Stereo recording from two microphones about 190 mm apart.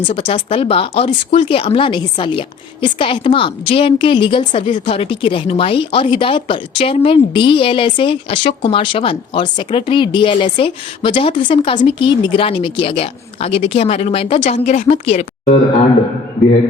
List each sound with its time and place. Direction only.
0.1 s speech: 30° left (ahead or behind)